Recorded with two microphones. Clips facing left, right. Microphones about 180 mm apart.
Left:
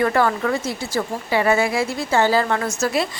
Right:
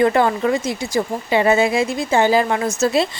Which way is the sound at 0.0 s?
20° right (ahead or behind).